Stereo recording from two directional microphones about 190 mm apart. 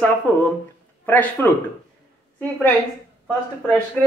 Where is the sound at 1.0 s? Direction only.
10° left (ahead or behind).